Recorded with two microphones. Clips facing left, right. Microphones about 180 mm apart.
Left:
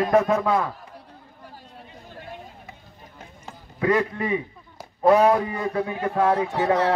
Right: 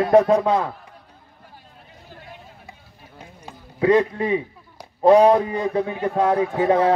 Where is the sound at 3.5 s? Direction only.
25° right (ahead or behind).